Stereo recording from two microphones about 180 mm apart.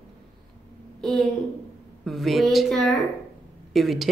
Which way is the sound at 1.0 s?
Centre (ahead or behind).